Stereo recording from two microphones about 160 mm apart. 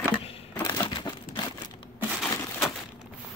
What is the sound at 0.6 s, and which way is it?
Crumpling, 30° left (ahead or behind).